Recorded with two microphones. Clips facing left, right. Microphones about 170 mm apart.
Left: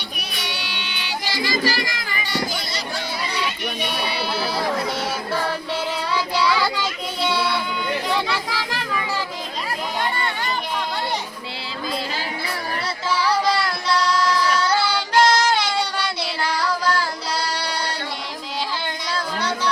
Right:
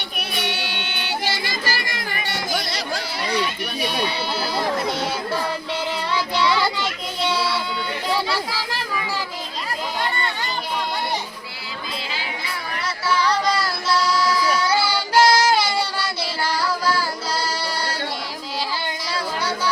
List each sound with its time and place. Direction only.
0.3 s music: 55° right (ahead or behind)
3.8 s sheep: centre (ahead or behind)
6.1 s child singing: centre (ahead or behind)
7.2 s a sound: centre (ahead or behind)
13.1 s child singing: 5° left (ahead or behind)
19.1 s a sound: 5° right (ahead or behind)